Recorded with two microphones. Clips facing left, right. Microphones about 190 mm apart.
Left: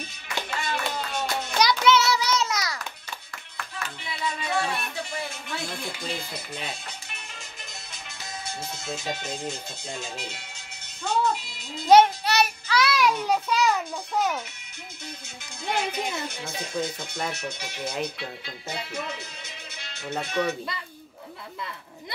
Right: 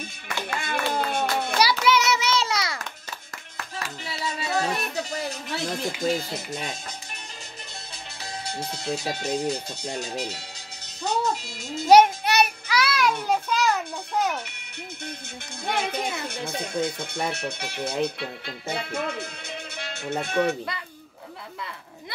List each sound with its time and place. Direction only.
0.5 s clapping: 55° right (ahead or behind)
1.6 s music: 10° right (ahead or behind)
2.0 s child singing: 25° right (ahead or behind)
3.5 s music: 40° right (ahead or behind)
5.9 s speech: 45° right (ahead or behind)
8.5 s speech: 35° right (ahead or behind)
11.9 s child singing: 15° right (ahead or behind)
12.8 s a child's voice: centre (ahead or behind)
15.6 s speech: 55° right (ahead or behind)